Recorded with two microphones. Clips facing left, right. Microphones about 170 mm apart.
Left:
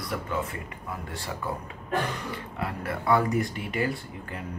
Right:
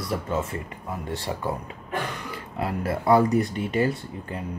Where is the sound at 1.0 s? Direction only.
25° right (ahead or behind).